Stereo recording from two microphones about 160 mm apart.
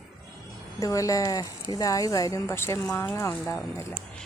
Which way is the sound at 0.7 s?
20° left (ahead or behind).